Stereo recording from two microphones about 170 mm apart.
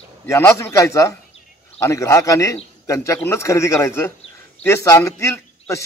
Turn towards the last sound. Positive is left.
turn(degrees=15)  # may be behind; listen again after turning